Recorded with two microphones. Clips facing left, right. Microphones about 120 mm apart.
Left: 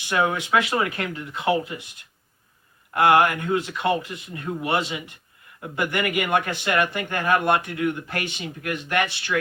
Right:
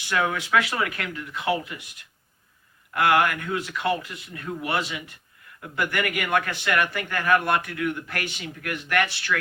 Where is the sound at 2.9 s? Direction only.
25° left (ahead or behind).